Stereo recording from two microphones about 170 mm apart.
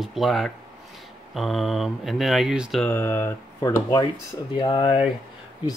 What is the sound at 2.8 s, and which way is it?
Speech, 15° left (ahead or behind).